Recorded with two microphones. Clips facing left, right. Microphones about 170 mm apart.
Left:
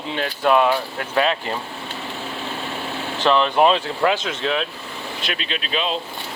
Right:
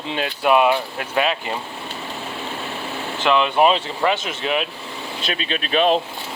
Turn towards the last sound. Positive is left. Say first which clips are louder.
# right 6 dB
turn(degrees=-50)  # may be behind; listen again after turning